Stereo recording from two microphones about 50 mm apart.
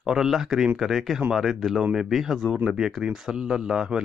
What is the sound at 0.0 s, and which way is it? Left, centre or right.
Speech, centre.